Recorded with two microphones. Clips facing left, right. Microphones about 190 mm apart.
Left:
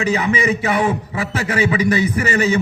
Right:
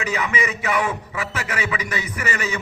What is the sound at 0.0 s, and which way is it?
A man's voice, 30° left (ahead or behind).